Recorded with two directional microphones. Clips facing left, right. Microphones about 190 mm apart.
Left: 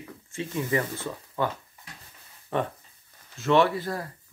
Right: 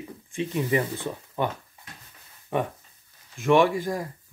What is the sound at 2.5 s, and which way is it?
Speech, 15° right (ahead or behind).